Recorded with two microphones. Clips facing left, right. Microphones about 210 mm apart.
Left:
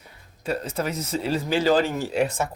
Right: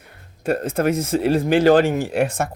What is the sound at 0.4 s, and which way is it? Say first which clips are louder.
Speech: right 7 dB; 50° right (ahead or behind).